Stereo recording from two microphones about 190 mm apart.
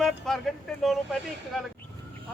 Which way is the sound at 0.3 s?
Centre (ahead or behind).